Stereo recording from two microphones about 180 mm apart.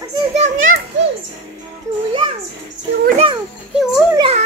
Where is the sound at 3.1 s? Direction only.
30° right (ahead or behind).